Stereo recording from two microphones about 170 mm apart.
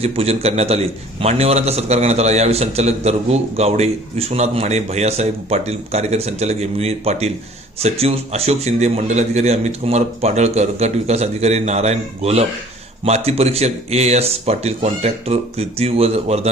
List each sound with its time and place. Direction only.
0.0 s a man's voice: 35° right (ahead or behind)